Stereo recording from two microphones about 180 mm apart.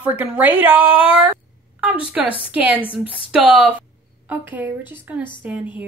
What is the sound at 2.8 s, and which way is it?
Speech, 30° left (ahead or behind).